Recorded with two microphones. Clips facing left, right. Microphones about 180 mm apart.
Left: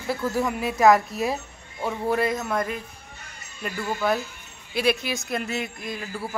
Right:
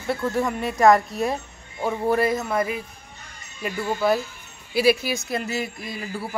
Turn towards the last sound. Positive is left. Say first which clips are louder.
# right 1 dB
turn(degrees=0)  # may be behind; listen again after turning